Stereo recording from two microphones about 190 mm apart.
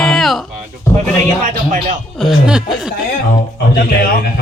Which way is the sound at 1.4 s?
40° right (ahead or behind).